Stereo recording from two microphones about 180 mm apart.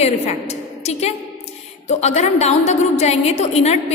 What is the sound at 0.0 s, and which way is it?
A woman's voice, 40° left (ahead or behind).